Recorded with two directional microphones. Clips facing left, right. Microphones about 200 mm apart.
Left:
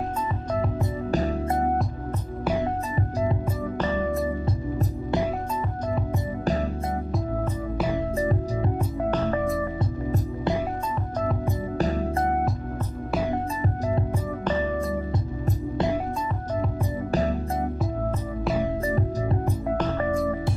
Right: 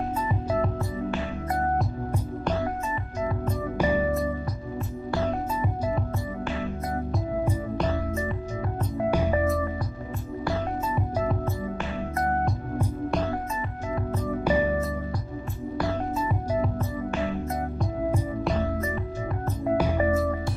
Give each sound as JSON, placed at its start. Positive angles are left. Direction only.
{"t": 3.7, "sound": "music", "side_deg": -10}
{"t": 9.1, "sound": "music", "side_deg": -10}
{"t": 14.4, "sound": "music", "side_deg": -10}
{"t": 17.1, "sound": "music", "side_deg": 40}
{"t": 18.9, "sound": "music", "side_deg": 35}
{"t": 19.8, "sound": "music", "side_deg": -10}